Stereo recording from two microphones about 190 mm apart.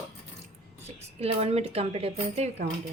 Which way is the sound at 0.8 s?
35° right (ahead or behind).